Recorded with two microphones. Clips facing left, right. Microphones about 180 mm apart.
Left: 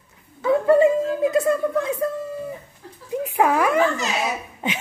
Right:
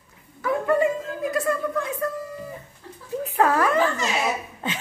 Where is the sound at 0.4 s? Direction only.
25° left (ahead or behind).